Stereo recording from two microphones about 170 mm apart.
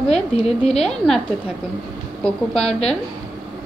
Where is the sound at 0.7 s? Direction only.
5° left (ahead or behind).